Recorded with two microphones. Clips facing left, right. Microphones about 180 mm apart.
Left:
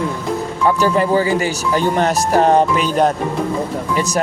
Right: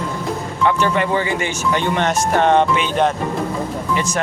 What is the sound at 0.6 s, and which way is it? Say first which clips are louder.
Speech: left 2 dB; 35° left (ahead or behind).